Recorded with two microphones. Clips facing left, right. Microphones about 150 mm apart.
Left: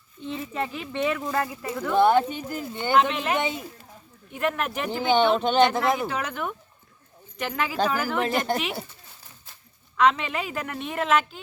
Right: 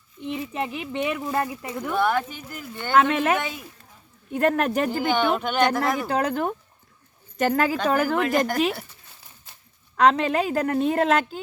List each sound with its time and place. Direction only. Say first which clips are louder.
0.2 s speech: right 2 dB; 15° right (ahead or behind)
2.0 s speech: left 5 dB; 30° left (ahead or behind)
3.0 s speech: right 7 dB; 55° right (ahead or behind)
3.4 s speech: left 4 dB; 20° left (ahead or behind)
4.4 s a woman's voice: right 6 dB; 40° right (ahead or behind)
4.9 s speech: left 1 dB; 25° left (ahead or behind)
6.1 s a woman's voice: right 6 dB; 40° right (ahead or behind)
8.2 s speech: right 2 dB; 30° left (ahead or behind)
10.0 s a woman's voice: right 3 dB; 40° right (ahead or behind)